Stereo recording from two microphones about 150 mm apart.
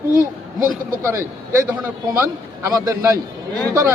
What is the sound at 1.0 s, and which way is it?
Speech, 15° right (ahead or behind).